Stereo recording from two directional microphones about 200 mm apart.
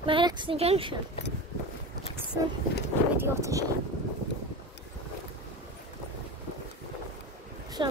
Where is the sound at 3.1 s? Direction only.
15° right (ahead or behind).